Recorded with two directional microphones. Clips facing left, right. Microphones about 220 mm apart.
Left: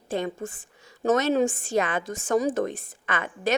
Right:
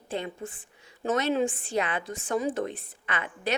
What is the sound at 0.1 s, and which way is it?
A woman's voice, 45° left (ahead or behind).